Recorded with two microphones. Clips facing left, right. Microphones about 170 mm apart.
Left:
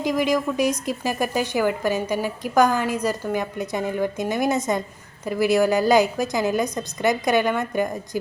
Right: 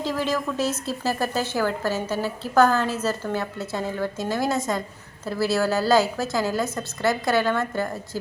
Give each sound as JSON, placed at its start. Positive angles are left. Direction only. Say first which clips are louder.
{"t": 0.0, "sound": "a woman's voice", "louder": "left 4 dB", "side_deg": 15}